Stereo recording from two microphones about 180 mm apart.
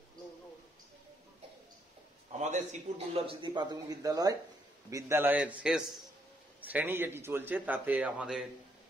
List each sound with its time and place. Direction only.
2.3 s a man's voice: 40° right (ahead or behind); by 8.5 s 5° right (ahead or behind)